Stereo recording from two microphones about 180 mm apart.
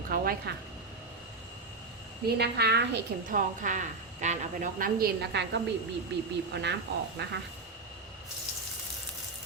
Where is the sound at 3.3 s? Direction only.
45° right (ahead or behind).